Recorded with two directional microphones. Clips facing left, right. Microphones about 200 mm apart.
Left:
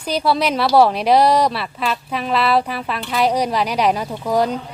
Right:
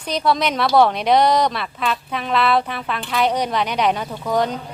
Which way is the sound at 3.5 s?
10° left (ahead or behind).